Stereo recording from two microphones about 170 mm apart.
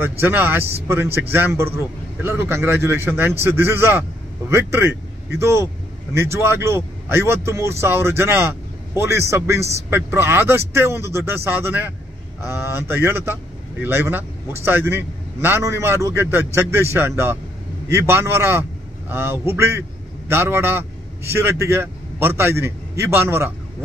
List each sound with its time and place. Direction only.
0.2 s a man's voice: 15° right (ahead or behind)